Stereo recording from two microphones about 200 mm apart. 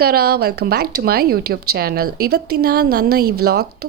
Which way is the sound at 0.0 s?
50° right (ahead or behind).